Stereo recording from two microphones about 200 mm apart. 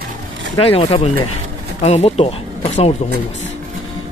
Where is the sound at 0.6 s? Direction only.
30° left (ahead or behind).